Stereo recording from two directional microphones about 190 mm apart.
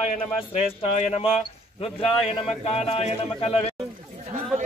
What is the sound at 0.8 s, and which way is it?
A man's voice, 35° left (ahead or behind).